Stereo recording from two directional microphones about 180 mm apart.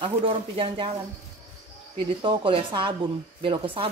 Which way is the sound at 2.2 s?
30° right (ahead or behind).